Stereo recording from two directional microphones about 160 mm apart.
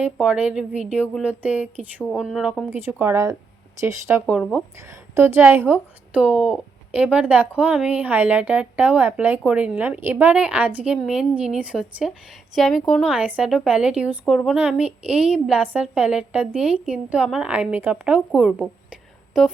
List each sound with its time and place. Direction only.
0.0 s a woman's voice: 10° right (ahead or behind)
4.4 s a woman's voice: 5° left (ahead or behind)
4.9 s a woman's voice: 15° right (ahead or behind)
18.3 s a sound: 5° right (ahead or behind)